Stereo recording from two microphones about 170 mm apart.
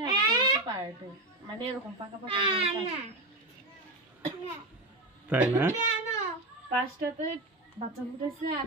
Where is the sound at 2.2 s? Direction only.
30° right (ahead or behind).